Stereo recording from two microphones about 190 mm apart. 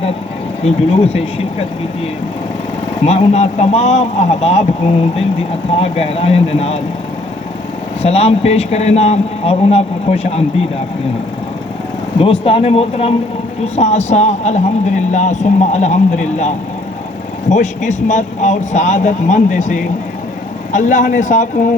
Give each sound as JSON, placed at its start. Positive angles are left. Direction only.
{"t": 0.6, "sound": "speech", "side_deg": 35}
{"t": 3.0, "sound": "speech", "side_deg": 35}
{"t": 5.7, "sound": "speech", "side_deg": 30}
{"t": 8.0, "sound": "speech", "side_deg": 35}
{"t": 12.2, "sound": "speech", "side_deg": 30}
{"t": 17.5, "sound": "speech", "side_deg": 40}